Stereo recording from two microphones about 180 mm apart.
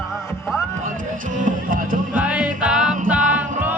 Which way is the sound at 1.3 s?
45° right (ahead or behind).